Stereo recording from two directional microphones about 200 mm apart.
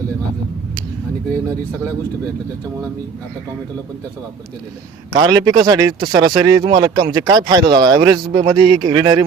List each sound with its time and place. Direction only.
5.1 s a man's voice: 25° right (ahead or behind)